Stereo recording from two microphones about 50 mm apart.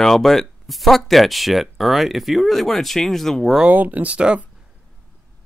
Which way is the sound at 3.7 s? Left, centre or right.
Right.